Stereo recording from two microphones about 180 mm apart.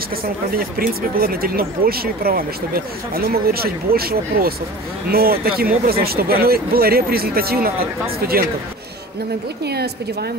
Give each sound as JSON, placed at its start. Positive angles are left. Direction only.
{"t": 0.2, "sound": "speech", "side_deg": -55}
{"t": 9.7, "sound": "speech", "side_deg": -65}